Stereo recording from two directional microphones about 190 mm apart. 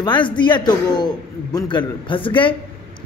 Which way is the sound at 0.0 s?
25° left (ahead or behind).